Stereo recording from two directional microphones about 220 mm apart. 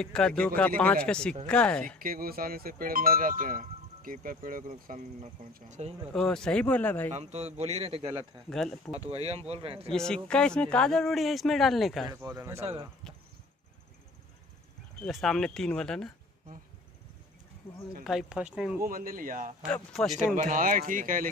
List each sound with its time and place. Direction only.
0.0 s speech: 5° left (ahead or behind)
2.0 s speech: 40° right (ahead or behind)
6.1 s speech: 5° left (ahead or behind)
7.1 s a man's voice: 30° right (ahead or behind)
8.5 s speech: centre (ahead or behind)
9.1 s a man's voice: 30° right (ahead or behind)
9.9 s speech: 5° left (ahead or behind)
12.1 s speech: 15° right (ahead or behind)
15.0 s speech: centre (ahead or behind)
17.6 s speech: 10° left (ahead or behind)
18.0 s speech: 5° right (ahead or behind)
18.8 s speech: 40° right (ahead or behind)
19.7 s speech: centre (ahead or behind)
20.3 s speech: 35° right (ahead or behind)